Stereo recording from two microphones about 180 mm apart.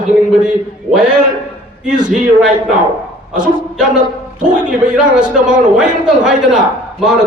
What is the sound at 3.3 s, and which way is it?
A man's voice, 5° right (ahead or behind).